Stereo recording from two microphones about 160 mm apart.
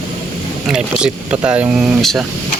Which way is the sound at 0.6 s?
5° right (ahead or behind).